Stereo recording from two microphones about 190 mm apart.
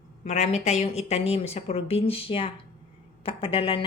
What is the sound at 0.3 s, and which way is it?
A woman's voice, 35° left (ahead or behind).